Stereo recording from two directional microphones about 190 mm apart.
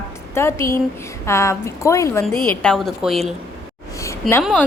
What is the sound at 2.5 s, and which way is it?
Speech, 5° left (ahead or behind).